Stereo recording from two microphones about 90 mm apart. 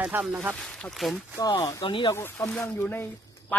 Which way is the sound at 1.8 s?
70° left (ahead or behind).